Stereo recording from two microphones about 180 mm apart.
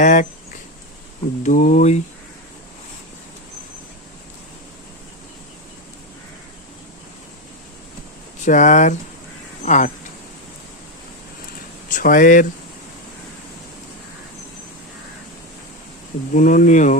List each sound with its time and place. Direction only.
0.0 s speech: 45° left (ahead or behind)
1.5 s speech: 45° left (ahead or behind)
8.4 s speech: 45° left (ahead or behind)
11.9 s speech: 50° left (ahead or behind)
16.3 s speech: 45° left (ahead or behind)